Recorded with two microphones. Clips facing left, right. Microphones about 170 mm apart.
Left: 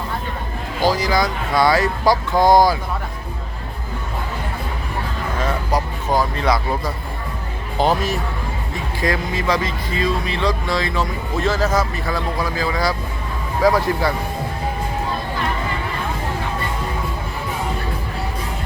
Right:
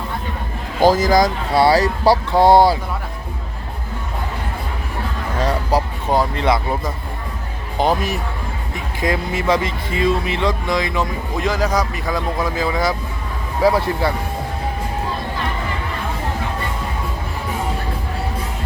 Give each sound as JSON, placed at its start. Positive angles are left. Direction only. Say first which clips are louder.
{"t": 0.8, "sound": "speech", "louder": "right 5 dB", "side_deg": -50}
{"t": 5.4, "sound": "speech", "louder": "right 3 dB", "side_deg": -35}